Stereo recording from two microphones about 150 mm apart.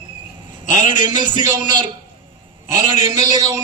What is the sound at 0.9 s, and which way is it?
A man's voice, 30° right (ahead or behind).